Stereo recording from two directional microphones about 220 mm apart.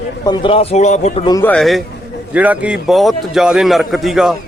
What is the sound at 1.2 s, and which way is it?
A man's voice, 10° left (ahead or behind).